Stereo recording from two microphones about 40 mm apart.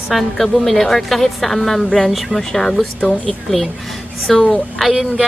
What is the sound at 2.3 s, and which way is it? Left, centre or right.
Speech, centre.